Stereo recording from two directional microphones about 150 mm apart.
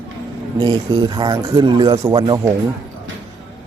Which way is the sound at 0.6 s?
30° right (ahead or behind).